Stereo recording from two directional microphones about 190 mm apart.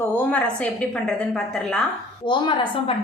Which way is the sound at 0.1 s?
10° left (ahead or behind).